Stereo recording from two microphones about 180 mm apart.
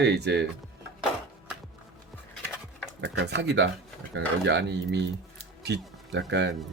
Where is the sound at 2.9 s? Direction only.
75° right (ahead or behind).